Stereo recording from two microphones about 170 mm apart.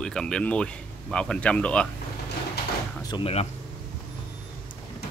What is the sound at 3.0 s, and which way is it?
Speech, 30° left (ahead or behind).